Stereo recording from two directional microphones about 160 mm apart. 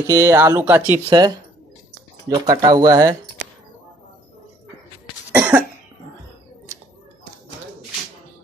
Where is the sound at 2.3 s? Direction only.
25° right (ahead or behind).